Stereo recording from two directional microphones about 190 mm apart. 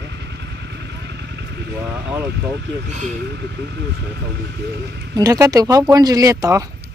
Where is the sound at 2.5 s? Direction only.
65° right (ahead or behind).